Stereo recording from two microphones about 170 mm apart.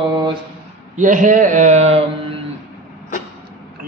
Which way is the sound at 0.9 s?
50° right (ahead or behind).